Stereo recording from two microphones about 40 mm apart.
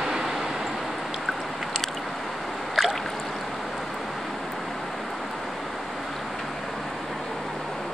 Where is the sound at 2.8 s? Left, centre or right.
Centre.